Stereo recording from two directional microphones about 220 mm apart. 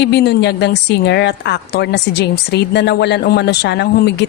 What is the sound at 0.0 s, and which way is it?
A woman's voice, 50° left (ahead or behind).